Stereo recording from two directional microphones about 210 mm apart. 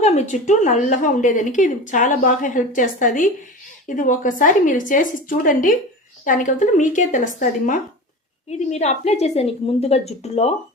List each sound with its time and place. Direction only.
0.0 s a woman's voice: 35° left (ahead or behind)